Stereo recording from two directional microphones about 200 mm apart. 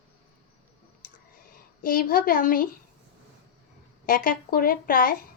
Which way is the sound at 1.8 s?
45° left (ahead or behind).